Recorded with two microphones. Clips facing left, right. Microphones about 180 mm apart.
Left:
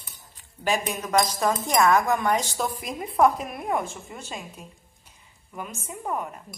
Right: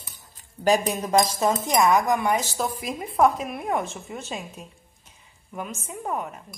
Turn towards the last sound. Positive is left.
turn(degrees=-5)  # may be behind; listen again after turning